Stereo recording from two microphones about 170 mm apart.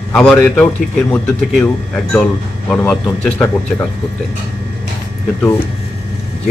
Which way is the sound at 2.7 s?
5° left (ahead or behind).